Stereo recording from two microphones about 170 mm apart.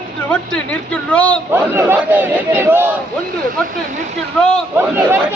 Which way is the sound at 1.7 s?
10° right (ahead or behind).